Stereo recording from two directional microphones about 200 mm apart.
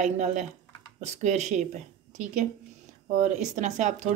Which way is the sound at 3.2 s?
35° right (ahead or behind).